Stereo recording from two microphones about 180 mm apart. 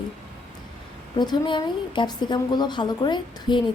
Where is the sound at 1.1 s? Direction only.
25° left (ahead or behind).